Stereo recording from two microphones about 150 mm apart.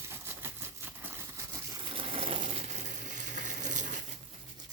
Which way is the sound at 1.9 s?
40° right (ahead or behind).